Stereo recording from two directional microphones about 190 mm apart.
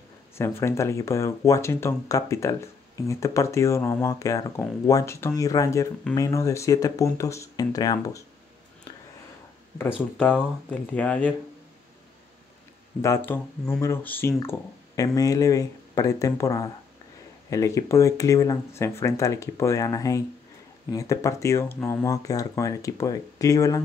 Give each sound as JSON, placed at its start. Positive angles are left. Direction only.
{"t": 0.4, "sound": "speech", "side_deg": 15}
{"t": 9.9, "sound": "speech", "side_deg": 5}
{"t": 13.0, "sound": "speech", "side_deg": 15}